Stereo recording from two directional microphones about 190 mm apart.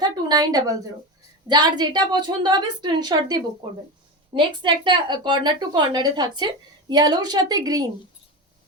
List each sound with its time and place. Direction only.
0.0 s a woman's voice: 20° right (ahead or behind)